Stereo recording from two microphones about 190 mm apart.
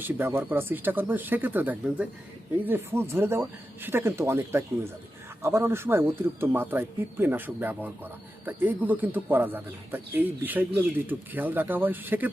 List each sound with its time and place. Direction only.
0.0 s speech: 10° right (ahead or behind)